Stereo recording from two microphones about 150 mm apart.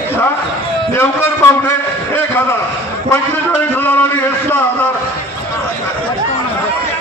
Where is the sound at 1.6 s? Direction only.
15° left (ahead or behind).